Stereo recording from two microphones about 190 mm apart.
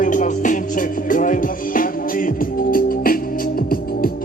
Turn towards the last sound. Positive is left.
turn(degrees=50)  # may be behind; listen again after turning